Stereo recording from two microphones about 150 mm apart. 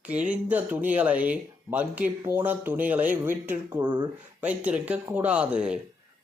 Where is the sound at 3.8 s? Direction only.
30° right (ahead or behind).